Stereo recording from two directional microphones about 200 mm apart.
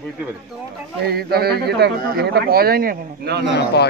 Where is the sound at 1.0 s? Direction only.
50° right (ahead or behind).